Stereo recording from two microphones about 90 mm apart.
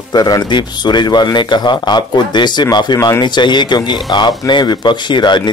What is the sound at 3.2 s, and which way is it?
Speech, 60° left (ahead or behind).